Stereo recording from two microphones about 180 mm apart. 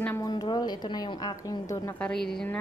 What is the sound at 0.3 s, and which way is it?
A woman's voice, 25° left (ahead or behind).